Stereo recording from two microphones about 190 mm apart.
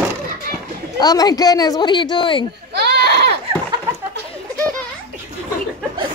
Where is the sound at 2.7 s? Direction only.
60° right (ahead or behind).